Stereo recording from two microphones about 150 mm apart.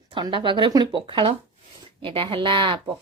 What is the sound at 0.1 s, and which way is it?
A child's voice, 35° right (ahead or behind).